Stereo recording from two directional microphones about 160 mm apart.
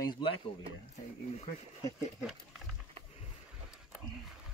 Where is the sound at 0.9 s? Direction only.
45° left (ahead or behind).